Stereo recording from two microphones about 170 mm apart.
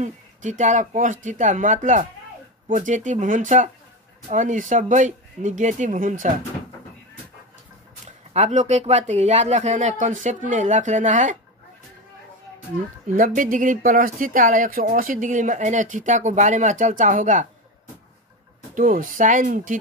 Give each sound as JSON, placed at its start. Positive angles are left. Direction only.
{"t": 0.0, "sound": "speech", "side_deg": -45}
{"t": 8.3, "sound": "speech", "side_deg": -40}
{"t": 13.1, "sound": "speech", "side_deg": -50}
{"t": 18.8, "sound": "speech", "side_deg": -55}